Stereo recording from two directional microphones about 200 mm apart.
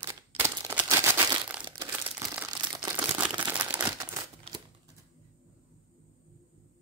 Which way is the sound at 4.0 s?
20° right (ahead or behind).